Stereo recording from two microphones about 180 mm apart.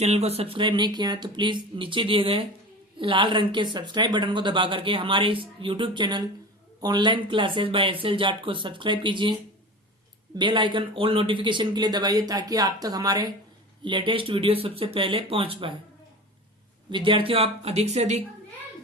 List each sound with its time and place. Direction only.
0.0 s speech: 35° right (ahead or behind)
16.9 s speech: 30° right (ahead or behind)